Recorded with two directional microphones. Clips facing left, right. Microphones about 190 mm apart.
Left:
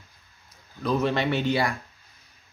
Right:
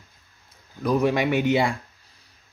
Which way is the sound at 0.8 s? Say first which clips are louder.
Right 3 dB; 15° right (ahead or behind).